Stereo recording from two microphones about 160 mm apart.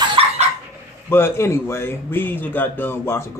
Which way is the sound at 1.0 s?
15° left (ahead or behind).